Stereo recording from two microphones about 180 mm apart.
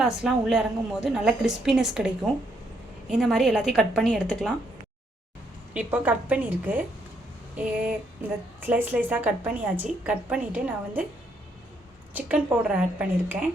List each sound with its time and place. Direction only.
0.0 s a woman's voice: centre (ahead or behind)
5.7 s a woman's voice: 10° right (ahead or behind)
8.2 s a woman's voice: 10° right (ahead or behind)
12.1 s a woman's voice: 10° right (ahead or behind)